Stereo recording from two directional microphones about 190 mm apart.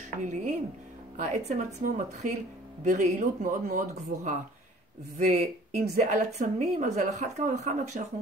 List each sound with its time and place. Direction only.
0.2 s a woman's voice: 40° right (ahead or behind)